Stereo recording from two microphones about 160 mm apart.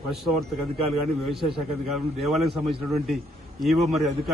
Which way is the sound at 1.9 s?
Centre (ahead or behind).